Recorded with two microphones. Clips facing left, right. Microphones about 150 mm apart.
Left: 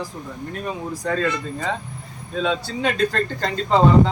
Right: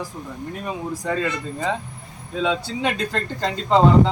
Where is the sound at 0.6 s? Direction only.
10° right (ahead or behind).